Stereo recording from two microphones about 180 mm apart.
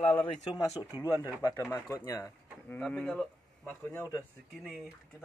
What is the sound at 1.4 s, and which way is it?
Speech, 20° left (ahead or behind).